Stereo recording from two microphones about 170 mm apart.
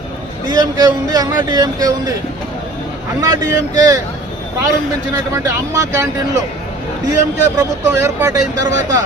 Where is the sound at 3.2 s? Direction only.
25° right (ahead or behind).